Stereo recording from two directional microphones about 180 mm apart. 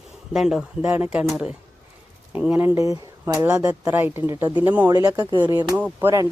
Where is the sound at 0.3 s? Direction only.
5° right (ahead or behind).